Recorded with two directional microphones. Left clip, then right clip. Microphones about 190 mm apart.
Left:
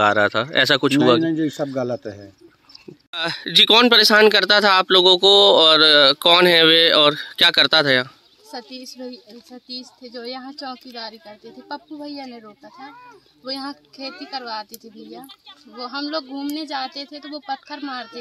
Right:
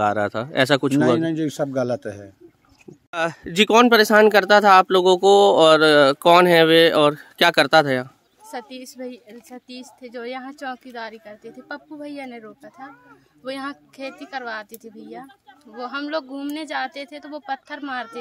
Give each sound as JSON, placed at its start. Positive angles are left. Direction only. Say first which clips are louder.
{"t": 0.0, "sound": "speech", "louder": "left 4 dB", "side_deg": -5}
{"t": 1.2, "sound": "a man's voice", "louder": "left 1 dB", "side_deg": -20}
{"t": 3.1, "sound": "speech", "louder": "left 1 dB", "side_deg": 0}
{"t": 8.6, "sound": "a woman's voice", "louder": "left 1 dB", "side_deg": -45}
{"t": 8.9, "sound": "speech", "louder": "even", "side_deg": -15}
{"t": 15.8, "sound": "speech", "louder": "even", "side_deg": -15}